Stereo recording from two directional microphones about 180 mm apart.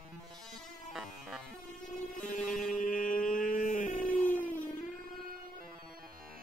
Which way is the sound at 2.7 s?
50° left (ahead or behind).